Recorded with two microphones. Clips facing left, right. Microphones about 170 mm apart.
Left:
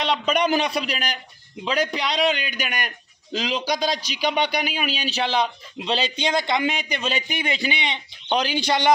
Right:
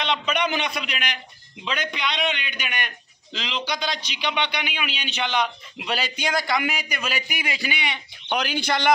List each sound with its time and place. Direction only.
0.0 s a man's voice: 40° left (ahead or behind); by 8.9 s 15° left (ahead or behind)